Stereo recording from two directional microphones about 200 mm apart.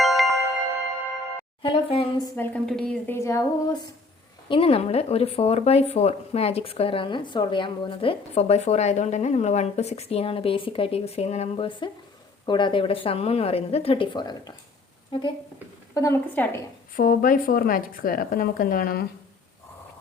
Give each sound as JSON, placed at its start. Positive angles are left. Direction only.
{"t": 0.0, "sound": "music", "side_deg": 0}
{"t": 1.6, "sound": "speech", "side_deg": 30}
{"t": 2.3, "sound": "a woman's voice", "side_deg": 10}
{"t": 4.4, "sound": "a woman's voice", "side_deg": 25}
{"t": 16.0, "sound": "a woman's voice", "side_deg": 10}
{"t": 16.9, "sound": "a woman's voice", "side_deg": 45}